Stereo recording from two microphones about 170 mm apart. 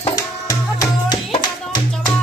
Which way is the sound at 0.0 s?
25° left (ahead or behind).